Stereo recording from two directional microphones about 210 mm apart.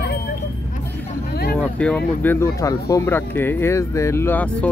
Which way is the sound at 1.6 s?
5° left (ahead or behind).